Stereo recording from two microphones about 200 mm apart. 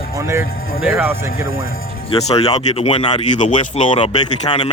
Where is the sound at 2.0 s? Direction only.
30° left (ahead or behind).